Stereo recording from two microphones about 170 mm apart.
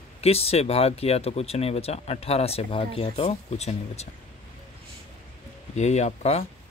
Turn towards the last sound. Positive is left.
turn(degrees=40)  # may be behind; listen again after turning